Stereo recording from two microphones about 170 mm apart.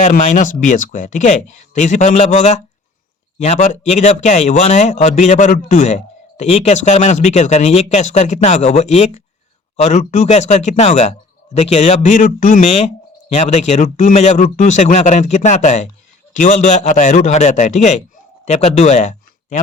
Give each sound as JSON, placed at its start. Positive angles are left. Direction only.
{"t": 0.0, "sound": "speech", "side_deg": 45}